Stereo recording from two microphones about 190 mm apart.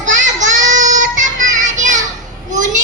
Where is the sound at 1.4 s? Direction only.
40° right (ahead or behind).